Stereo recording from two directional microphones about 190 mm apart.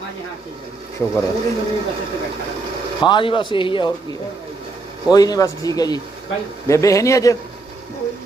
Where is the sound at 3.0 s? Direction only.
25° left (ahead or behind).